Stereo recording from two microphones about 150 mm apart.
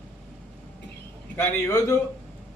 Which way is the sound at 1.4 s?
15° left (ahead or behind).